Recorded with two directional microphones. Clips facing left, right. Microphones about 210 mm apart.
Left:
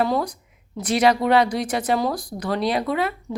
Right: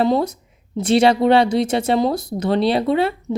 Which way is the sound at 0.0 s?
25° right (ahead or behind).